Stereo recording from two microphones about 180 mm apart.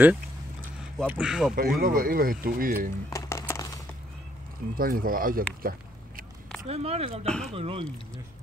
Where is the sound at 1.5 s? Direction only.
55° right (ahead or behind).